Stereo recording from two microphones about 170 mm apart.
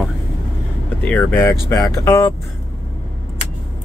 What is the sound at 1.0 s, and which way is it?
Speech, 10° left (ahead or behind).